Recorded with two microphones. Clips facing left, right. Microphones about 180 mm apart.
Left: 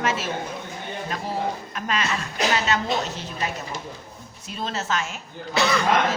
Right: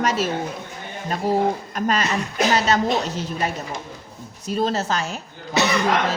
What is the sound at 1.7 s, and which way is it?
A woman's voice, 40° right (ahead or behind).